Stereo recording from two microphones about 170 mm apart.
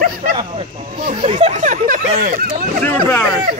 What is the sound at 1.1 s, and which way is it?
Speech, 40° right (ahead or behind).